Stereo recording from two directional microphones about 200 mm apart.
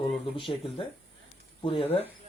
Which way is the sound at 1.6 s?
30° left (ahead or behind).